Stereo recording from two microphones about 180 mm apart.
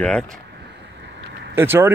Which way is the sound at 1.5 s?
10° right (ahead or behind).